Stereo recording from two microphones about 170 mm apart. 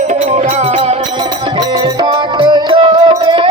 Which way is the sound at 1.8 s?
25° right (ahead or behind).